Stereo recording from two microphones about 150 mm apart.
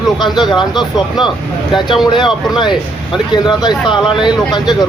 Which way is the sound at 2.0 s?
30° left (ahead or behind).